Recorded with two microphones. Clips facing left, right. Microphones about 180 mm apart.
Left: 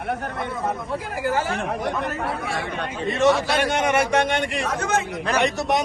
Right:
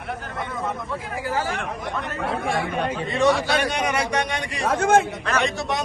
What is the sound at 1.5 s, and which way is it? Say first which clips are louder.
Speech: left 3 dB; 35° left (ahead or behind).